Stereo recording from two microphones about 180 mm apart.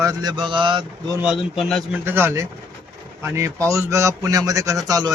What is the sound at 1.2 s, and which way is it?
Speech, 5° right (ahead or behind).